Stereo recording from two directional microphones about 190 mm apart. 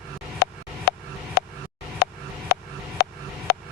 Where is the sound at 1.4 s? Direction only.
60° left (ahead or behind).